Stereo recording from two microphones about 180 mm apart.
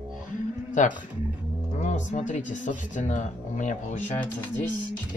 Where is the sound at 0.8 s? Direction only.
45° left (ahead or behind).